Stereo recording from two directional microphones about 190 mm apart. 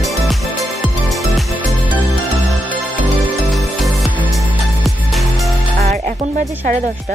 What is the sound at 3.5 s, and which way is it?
Music, centre (ahead or behind).